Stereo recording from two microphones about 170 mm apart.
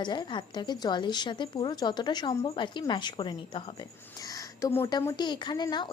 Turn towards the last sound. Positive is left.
turn(degrees=25)  # may be behind; listen again after turning